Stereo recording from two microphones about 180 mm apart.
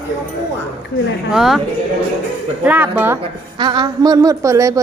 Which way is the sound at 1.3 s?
Centre (ahead or behind).